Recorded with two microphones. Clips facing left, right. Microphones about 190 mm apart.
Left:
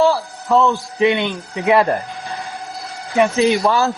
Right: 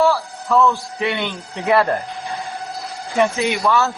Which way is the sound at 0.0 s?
25° left (ahead or behind).